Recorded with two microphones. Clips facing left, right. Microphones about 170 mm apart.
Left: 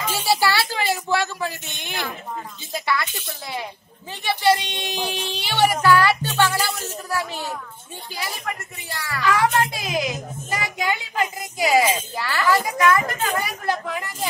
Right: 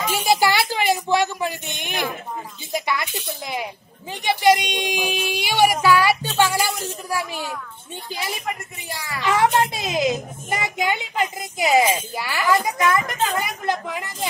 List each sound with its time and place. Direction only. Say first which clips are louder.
0.1 s speech: right 2 dB; 15° right (ahead or behind)
4.2 s a child's voice: right 2 dB; 15° right (ahead or behind)